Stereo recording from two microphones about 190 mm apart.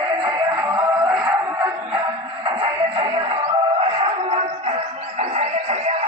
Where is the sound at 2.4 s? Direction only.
25° right (ahead or behind).